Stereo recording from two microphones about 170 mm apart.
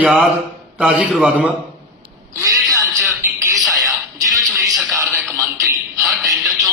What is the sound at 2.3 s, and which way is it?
Speech, 20° right (ahead or behind).